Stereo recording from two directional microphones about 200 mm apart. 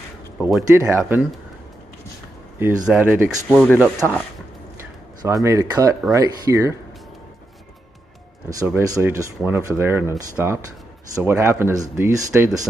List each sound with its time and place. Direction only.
0.4 s a sound: centre (ahead or behind)
0.7 s speech: 10° right (ahead or behind)
2.9 s speech: 5° right (ahead or behind)
3.4 s speech: 5° left (ahead or behind)
5.2 s speech: 15° right (ahead or behind)
8.5 s speech: 15° right (ahead or behind)
12.3 s speech: 5° right (ahead or behind)